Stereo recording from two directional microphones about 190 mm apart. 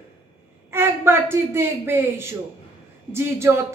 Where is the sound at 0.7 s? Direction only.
10° right (ahead or behind).